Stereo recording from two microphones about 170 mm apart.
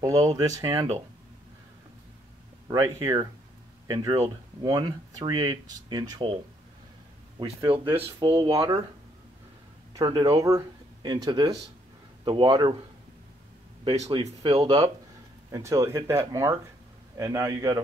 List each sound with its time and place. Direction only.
0.0 s speech: 20° right (ahead or behind)
2.7 s speech: 20° right (ahead or behind)
7.3 s speech: 30° right (ahead or behind)
9.9 s speech: 30° right (ahead or behind)
13.8 s speech: 35° right (ahead or behind); by 17.7 s 20° right (ahead or behind)